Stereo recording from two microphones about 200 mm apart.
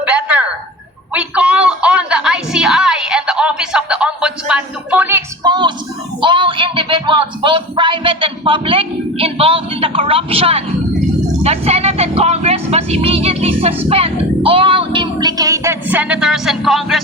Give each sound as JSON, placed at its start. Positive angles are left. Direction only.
{"t": 0.0, "sound": "a sound", "side_deg": -5}
{"t": 1.1, "sound": "music", "side_deg": -5}
{"t": 11.4, "sound": "speech", "side_deg": -30}